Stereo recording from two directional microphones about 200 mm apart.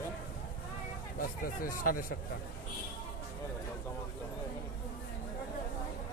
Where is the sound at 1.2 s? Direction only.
45° left (ahead or behind).